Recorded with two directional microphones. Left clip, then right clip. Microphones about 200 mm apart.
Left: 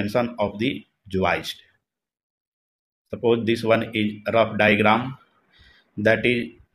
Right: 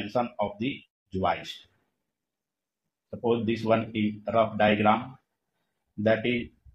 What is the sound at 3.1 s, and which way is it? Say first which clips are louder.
Speech: left 6 dB; 50° left (ahead or behind).